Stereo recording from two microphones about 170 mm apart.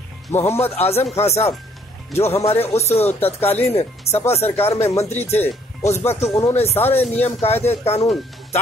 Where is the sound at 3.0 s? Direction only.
10° left (ahead or behind).